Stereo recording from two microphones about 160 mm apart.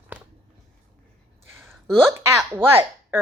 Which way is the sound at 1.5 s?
15° right (ahead or behind).